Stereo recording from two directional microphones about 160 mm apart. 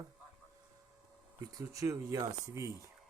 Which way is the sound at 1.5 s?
20° right (ahead or behind).